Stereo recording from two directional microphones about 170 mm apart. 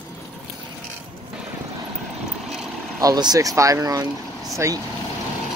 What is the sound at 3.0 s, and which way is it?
Speech, 20° right (ahead or behind).